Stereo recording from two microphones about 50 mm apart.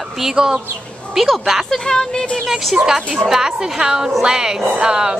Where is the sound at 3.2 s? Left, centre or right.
Centre.